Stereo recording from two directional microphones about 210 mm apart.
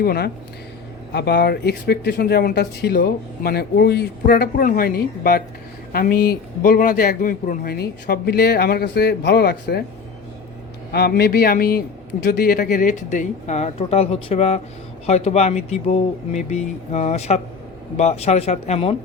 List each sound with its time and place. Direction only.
0.0 s speech: 45° left (ahead or behind)
10.9 s speech: 50° left (ahead or behind); by 18.9 s 30° left (ahead or behind)